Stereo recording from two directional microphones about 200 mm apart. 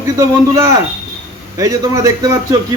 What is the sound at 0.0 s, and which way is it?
Speech, 15° right (ahead or behind).